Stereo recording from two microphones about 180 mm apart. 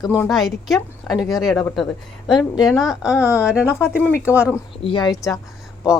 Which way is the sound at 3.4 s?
5° right (ahead or behind).